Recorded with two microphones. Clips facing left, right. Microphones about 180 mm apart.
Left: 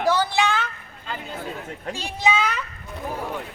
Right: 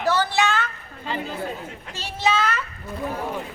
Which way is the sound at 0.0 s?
15° left (ahead or behind).